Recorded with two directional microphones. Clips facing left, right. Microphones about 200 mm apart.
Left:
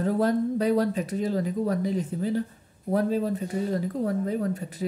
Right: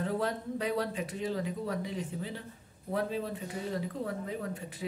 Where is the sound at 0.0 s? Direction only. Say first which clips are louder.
Left 9 dB; 40° left (ahead or behind).